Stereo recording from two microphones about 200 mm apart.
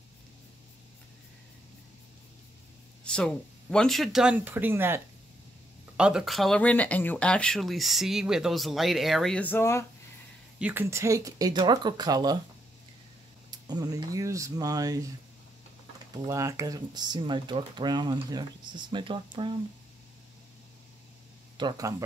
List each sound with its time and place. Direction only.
3.0 s speech: 5° left (ahead or behind)
10.6 s speech: 10° right (ahead or behind)
13.5 s speech: 20° right (ahead or behind)
16.3 s speech: 15° right (ahead or behind)
21.5 s speech: 20° right (ahead or behind)